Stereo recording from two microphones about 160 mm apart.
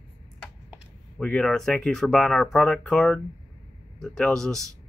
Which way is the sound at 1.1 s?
5° left (ahead or behind).